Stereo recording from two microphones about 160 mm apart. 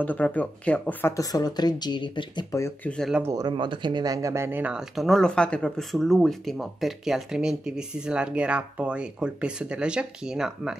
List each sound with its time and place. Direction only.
0.0 s speech: 10° left (ahead or behind)
1.1 s speech: 25° left (ahead or behind)
2.5 s speech: 15° left (ahead or behind)
2.9 s speech: 5° left (ahead or behind)
3.2 s speech: 20° right (ahead or behind); by 10.8 s 5° right (ahead or behind)